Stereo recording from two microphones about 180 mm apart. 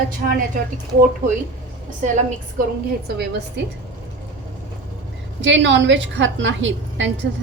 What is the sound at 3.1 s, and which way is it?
Speech, 65° right (ahead or behind).